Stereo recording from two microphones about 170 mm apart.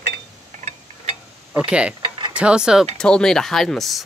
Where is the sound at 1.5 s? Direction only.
5° right (ahead or behind).